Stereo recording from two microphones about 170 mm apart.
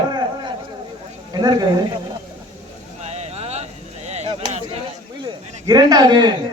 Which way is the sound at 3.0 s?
40° right (ahead or behind).